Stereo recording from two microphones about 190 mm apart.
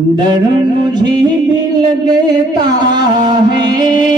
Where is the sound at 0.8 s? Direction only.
20° right (ahead or behind).